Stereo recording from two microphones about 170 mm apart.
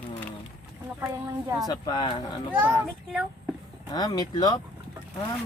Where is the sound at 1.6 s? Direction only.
25° left (ahead or behind).